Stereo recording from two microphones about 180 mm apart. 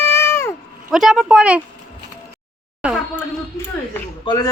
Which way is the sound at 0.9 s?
Centre (ahead or behind).